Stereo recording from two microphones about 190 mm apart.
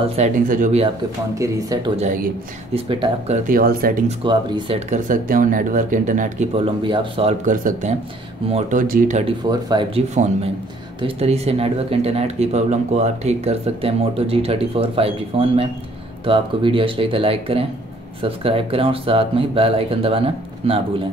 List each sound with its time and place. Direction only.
0.1 s speech: 40° right (ahead or behind)
1.3 s speech: 15° right (ahead or behind)
2.0 s speech: 40° right (ahead or behind)
2.9 s speech: 30° right (ahead or behind)
3.4 s speech: 50° right (ahead or behind)
4.2 s speech: 25° right (ahead or behind); by 9.2 s 45° right (ahead or behind)
9.2 s speech: 25° right (ahead or behind)
10.1 s speech: 40° right (ahead or behind)